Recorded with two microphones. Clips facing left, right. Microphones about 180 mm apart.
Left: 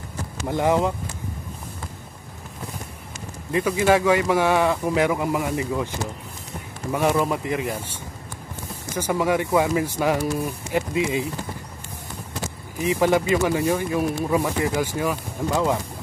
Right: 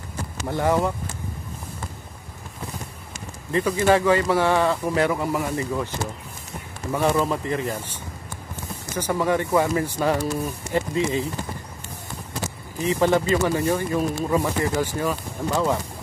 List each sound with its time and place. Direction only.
0.5 s speech: 15° left (ahead or behind)
3.5 s speech: 10° left (ahead or behind)
6.9 s speech: 10° left (ahead or behind)
8.9 s speech: 10° left (ahead or behind)
12.8 s speech: 10° left (ahead or behind)